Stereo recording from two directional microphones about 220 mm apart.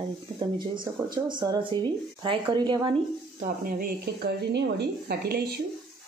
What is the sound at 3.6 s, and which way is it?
A woman's voice, 40° right (ahead or behind).